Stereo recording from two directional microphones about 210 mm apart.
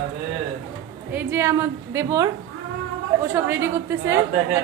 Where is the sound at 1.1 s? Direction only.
10° right (ahead or behind).